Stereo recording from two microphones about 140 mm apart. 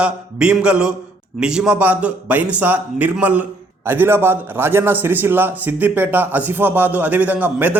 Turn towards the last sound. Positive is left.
turn(degrees=-10)  # may be behind; listen again after turning